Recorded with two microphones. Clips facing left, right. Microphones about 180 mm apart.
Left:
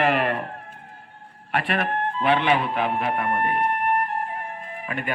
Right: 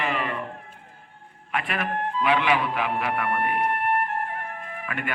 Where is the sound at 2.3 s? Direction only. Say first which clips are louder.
Left 2 dB; 30° left (ahead or behind).